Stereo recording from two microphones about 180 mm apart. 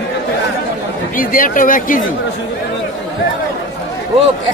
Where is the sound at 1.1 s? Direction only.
50° left (ahead or behind).